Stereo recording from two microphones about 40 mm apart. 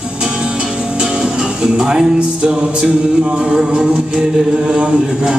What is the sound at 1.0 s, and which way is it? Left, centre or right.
Music, centre.